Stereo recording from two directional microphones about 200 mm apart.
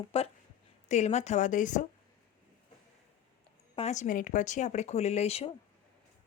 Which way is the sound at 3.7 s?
35° left (ahead or behind).